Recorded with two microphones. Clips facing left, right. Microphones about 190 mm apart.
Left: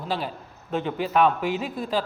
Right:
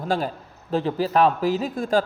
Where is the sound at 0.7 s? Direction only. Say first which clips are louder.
Right 3 dB; 35° right (ahead or behind).